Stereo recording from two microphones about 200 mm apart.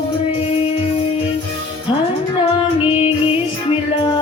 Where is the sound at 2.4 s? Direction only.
25° left (ahead or behind).